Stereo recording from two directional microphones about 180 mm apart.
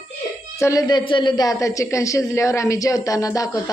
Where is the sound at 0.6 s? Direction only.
20° left (ahead or behind).